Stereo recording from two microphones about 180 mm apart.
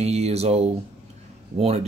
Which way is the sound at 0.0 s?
35° right (ahead or behind).